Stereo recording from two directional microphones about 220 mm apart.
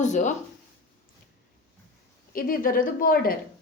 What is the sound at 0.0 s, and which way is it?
Speech, 35° left (ahead or behind).